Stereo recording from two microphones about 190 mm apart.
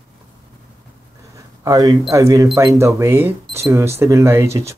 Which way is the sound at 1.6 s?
20° right (ahead or behind).